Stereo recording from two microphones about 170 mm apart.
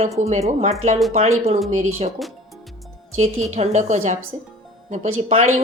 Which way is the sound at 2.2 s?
Centre (ahead or behind).